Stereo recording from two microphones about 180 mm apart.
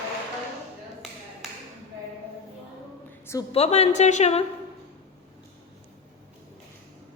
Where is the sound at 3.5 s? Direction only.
35° left (ahead or behind).